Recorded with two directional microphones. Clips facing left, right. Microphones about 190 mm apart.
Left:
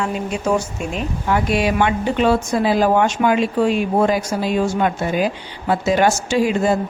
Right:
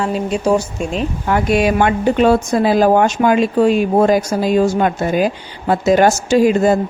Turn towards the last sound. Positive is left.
turn(degrees=-45)  # may be behind; listen again after turning